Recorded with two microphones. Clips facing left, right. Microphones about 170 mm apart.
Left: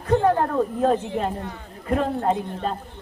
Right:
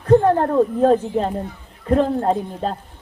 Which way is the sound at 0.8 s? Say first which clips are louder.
Right 5 dB; 35° right (ahead or behind).